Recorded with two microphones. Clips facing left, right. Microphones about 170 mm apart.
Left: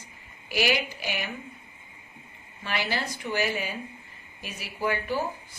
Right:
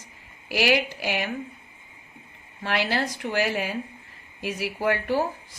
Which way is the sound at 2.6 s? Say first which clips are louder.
Right 5 dB; 75° right (ahead or behind).